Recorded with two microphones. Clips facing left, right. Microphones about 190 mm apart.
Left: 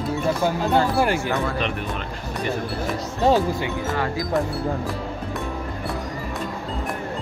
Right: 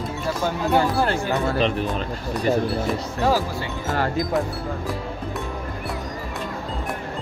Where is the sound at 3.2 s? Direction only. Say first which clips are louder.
Left 4 dB; 25° left (ahead or behind).